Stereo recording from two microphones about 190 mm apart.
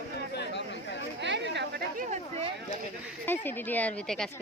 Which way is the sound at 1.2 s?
70° right (ahead or behind).